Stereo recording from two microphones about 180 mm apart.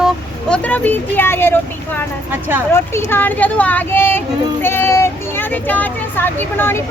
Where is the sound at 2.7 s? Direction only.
15° left (ahead or behind).